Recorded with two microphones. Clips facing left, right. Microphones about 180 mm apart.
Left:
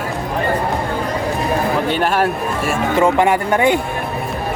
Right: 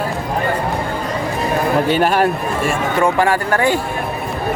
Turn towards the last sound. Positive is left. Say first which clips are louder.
# left 1 dB
turn(degrees=20)  # may be behind; listen again after turning